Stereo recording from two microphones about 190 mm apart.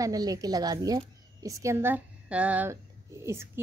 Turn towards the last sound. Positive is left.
turn(degrees=-15)  # may be behind; listen again after turning